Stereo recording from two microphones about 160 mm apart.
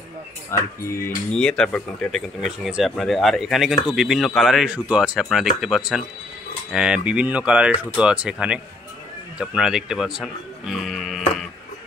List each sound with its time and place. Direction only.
0.5 s speech: 15° left (ahead or behind)
1.0 s speech: 5° left (ahead or behind)